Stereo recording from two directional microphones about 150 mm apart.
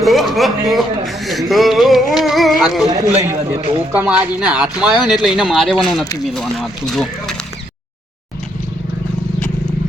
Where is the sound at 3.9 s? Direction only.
10° right (ahead or behind).